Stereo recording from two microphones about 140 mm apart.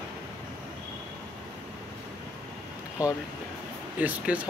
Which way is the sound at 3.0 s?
10° right (ahead or behind).